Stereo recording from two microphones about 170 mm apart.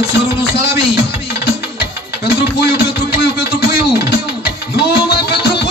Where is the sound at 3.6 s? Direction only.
70° left (ahead or behind).